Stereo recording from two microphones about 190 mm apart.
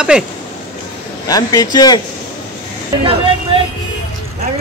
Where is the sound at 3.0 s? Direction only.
25° right (ahead or behind).